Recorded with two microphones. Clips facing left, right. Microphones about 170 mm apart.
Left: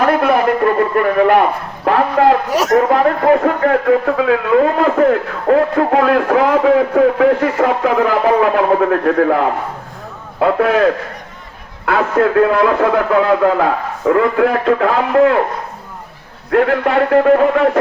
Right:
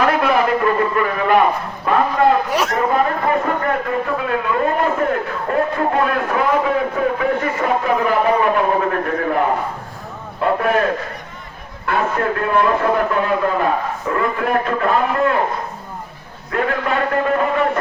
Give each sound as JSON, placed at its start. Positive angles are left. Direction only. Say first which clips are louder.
{"t": 0.0, "sound": "speech", "louder": "left 3 dB", "side_deg": 50}
{"t": 2.5, "sound": "a man's voice", "louder": "left 6 dB", "side_deg": 40}
{"t": 2.9, "sound": "a man's voice", "louder": "left 6 dB", "side_deg": 80}
{"t": 10.4, "sound": "a man's voice", "louder": "left 4 dB", "side_deg": 90}
{"t": 11.9, "sound": "a man's voice", "louder": "left 5 dB", "side_deg": 90}
{"t": 16.5, "sound": "a man's voice", "louder": "left 7 dB", "side_deg": 65}